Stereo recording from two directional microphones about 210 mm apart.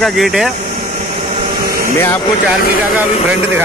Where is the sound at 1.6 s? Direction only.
45° right (ahead or behind).